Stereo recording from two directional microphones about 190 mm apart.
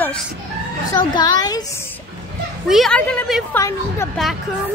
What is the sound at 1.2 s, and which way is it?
Speech, 20° left (ahead or behind).